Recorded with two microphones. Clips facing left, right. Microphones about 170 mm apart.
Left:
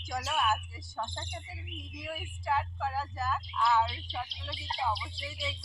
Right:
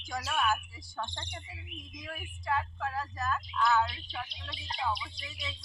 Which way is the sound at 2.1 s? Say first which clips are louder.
Left 1 dB; 30° left (ahead or behind).